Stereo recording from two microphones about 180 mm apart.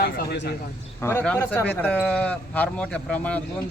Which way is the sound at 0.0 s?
65° left (ahead or behind).